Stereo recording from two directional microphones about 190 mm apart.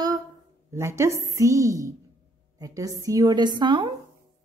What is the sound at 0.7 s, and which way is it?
A woman's voice, 15° right (ahead or behind).